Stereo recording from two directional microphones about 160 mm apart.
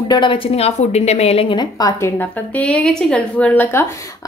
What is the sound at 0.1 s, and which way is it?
A woman's voice, 30° left (ahead or behind).